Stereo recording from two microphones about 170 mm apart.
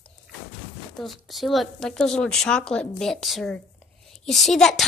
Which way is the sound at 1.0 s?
Centre (ahead or behind).